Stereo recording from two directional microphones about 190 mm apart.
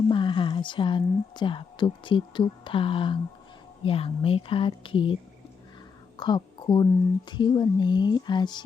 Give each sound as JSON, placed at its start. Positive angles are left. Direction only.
{"t": 0.1, "sound": "a woman's voice", "side_deg": 25}
{"t": 6.1, "sound": "a woman's voice", "side_deg": 25}